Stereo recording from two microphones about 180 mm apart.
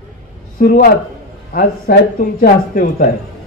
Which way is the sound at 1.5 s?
55° left (ahead or behind).